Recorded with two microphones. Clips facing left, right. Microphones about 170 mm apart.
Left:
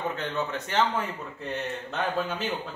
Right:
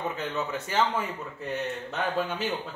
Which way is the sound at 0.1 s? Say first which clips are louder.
Left 1 dB; 5° right (ahead or behind).